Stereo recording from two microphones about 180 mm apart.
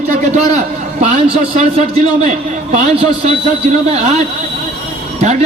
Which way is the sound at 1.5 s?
40° right (ahead or behind).